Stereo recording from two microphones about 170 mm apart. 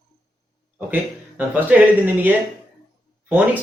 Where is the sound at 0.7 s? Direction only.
10° right (ahead or behind).